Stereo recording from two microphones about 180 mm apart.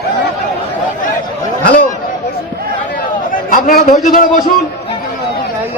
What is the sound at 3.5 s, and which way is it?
Speech, 50° left (ahead or behind).